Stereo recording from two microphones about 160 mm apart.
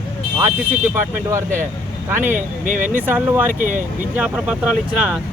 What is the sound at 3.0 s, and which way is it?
Speech, 10° right (ahead or behind).